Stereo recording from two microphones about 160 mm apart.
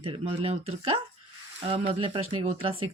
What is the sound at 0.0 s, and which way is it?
Speech, 35° right (ahead or behind).